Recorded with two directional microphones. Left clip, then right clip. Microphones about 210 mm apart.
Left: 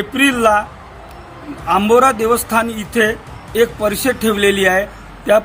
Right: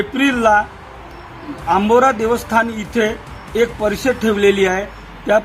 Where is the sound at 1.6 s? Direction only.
25° left (ahead or behind).